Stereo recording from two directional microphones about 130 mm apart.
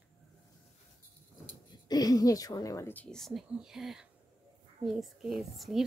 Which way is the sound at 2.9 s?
10° left (ahead or behind).